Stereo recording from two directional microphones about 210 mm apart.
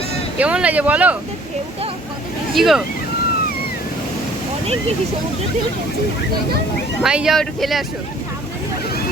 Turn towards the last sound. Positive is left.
turn(degrees=0)  # may be behind; listen again after turning